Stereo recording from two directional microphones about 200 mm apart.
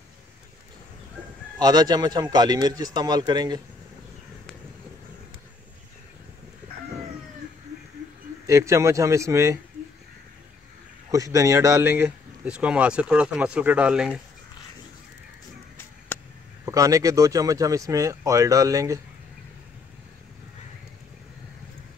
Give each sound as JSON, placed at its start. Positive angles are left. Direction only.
{"t": 1.6, "sound": "a man's voice", "side_deg": -20}
{"t": 8.5, "sound": "speech", "side_deg": -15}
{"t": 11.1, "sound": "speech", "side_deg": -15}
{"t": 16.1, "sound": "a sound", "side_deg": 10}
{"t": 16.6, "sound": "speech", "side_deg": -15}